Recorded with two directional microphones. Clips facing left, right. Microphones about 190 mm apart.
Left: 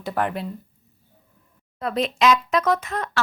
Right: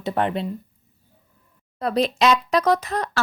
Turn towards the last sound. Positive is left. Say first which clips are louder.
# right 2 dB
turn(degrees=-35)  # may be behind; listen again after turning